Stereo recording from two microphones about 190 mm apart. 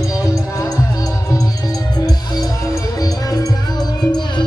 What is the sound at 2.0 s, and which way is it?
Music, 20° left (ahead or behind).